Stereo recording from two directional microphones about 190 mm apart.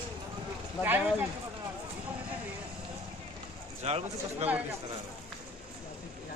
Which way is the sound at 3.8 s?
35° right (ahead or behind).